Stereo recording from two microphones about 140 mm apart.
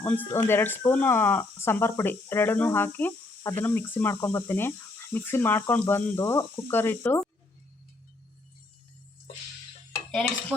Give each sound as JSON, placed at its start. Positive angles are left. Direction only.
{"t": 0.0, "sound": "speech", "side_deg": 15}